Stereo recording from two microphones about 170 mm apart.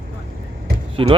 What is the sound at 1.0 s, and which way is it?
Speech, 30° right (ahead or behind).